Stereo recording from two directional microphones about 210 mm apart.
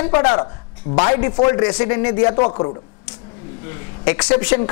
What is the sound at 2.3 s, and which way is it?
Speech, 30° left (ahead or behind).